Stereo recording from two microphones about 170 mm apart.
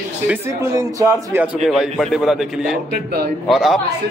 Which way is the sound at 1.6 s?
Centre (ahead or behind).